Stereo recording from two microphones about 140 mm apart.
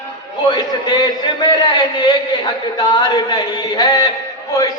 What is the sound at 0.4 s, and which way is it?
A man's voice, 30° left (ahead or behind).